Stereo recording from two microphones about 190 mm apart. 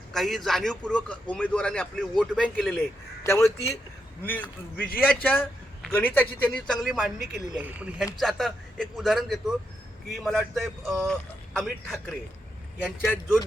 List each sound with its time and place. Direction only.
0.1 s a man's voice: centre (ahead or behind)
3.2 s a man's voice: 15° left (ahead or behind); by 13.4 s 5° right (ahead or behind)